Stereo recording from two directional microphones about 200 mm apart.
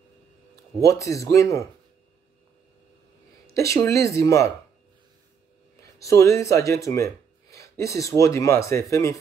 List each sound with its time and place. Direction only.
0.8 s speech: 15° left (ahead or behind)
3.4 s speech: 15° left (ahead or behind)
5.8 s speech: 15° left (ahead or behind)